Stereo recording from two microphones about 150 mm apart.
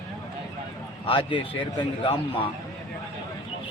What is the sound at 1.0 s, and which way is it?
Speech, 35° left (ahead or behind).